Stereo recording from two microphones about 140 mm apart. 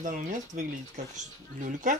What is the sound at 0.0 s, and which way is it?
Speech, 65° right (ahead or behind).